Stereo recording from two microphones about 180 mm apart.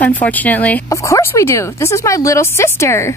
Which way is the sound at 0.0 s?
10° left (ahead or behind).